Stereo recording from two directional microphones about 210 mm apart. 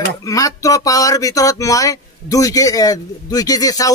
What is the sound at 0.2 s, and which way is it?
Speech, 15° left (ahead or behind).